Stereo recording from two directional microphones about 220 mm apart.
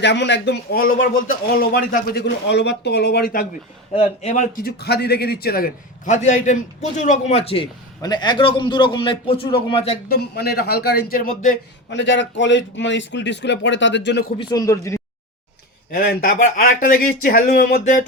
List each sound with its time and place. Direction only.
0.0 s speech: 50° left (ahead or behind)
3.9 s a man's voice: 25° left (ahead or behind)
10.1 s speech: 45° left (ahead or behind)
11.9 s a man's voice: 55° left (ahead or behind)
14.3 s speech: 15° left (ahead or behind)
15.9 s speech: 40° left (ahead or behind)